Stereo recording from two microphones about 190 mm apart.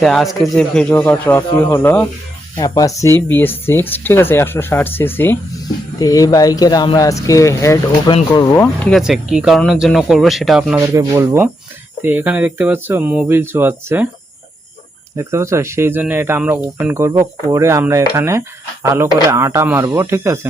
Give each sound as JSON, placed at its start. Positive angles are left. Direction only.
{"t": 0.0, "sound": "speech", "side_deg": 0}
{"t": 9.0, "sound": "speech", "side_deg": -5}
{"t": 10.8, "sound": "speech", "side_deg": -15}
{"t": 15.1, "sound": "speech", "side_deg": -15}